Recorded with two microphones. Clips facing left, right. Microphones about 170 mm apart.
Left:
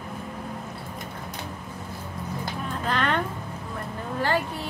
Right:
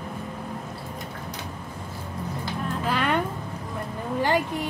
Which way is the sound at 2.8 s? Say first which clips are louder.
Right 1 dB; 10° right (ahead or behind).